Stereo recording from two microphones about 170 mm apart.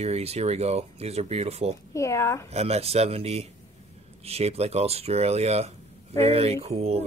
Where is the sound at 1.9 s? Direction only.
15° left (ahead or behind).